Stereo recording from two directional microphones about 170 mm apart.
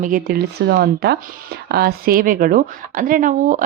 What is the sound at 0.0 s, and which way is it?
Speech, 55° right (ahead or behind).